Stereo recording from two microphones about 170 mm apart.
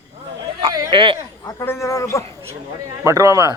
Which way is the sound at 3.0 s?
20° right (ahead or behind).